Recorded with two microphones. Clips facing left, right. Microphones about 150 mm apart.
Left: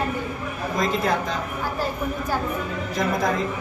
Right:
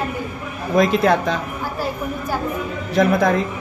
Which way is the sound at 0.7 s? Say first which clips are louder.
Right 8 dB; 70° right (ahead or behind).